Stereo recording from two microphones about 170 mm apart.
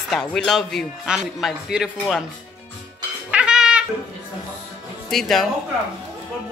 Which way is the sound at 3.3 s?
5° right (ahead or behind).